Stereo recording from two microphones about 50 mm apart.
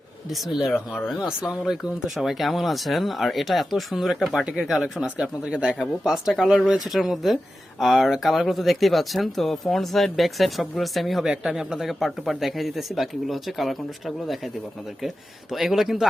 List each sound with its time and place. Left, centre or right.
0.3 s speech: centre
5.0 s speech: right
5.8 s speech: centre
15.5 s speech: centre